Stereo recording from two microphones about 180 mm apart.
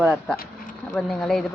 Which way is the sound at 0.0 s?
Centre (ahead or behind).